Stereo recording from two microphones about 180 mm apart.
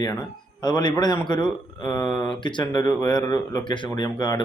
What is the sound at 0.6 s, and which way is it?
Speech, 25° left (ahead or behind).